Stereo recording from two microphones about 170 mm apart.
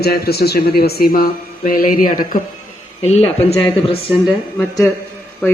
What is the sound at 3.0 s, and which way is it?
Speech, 40° left (ahead or behind).